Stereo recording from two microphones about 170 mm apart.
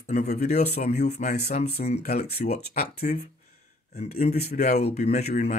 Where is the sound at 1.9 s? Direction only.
65° left (ahead or behind).